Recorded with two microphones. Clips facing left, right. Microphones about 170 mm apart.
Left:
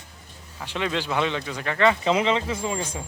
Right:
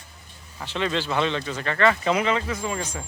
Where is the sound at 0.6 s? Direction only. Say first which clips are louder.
Right 1 dB; 10° left (ahead or behind).